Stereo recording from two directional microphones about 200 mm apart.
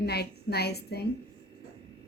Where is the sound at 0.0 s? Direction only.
55° left (ahead or behind).